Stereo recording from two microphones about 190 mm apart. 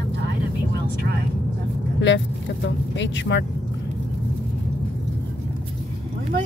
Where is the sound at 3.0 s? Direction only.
70° left (ahead or behind).